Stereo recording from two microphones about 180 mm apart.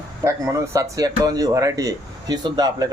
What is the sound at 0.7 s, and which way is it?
Speech, 20° right (ahead or behind).